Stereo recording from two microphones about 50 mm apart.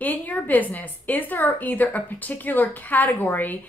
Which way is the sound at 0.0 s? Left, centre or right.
Left.